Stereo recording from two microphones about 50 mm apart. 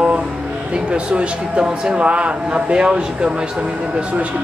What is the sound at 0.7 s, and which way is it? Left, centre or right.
Speech, right.